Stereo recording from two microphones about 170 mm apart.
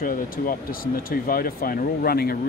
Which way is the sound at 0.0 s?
55° left (ahead or behind).